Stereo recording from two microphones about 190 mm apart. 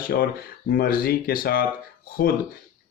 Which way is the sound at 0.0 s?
50° left (ahead or behind).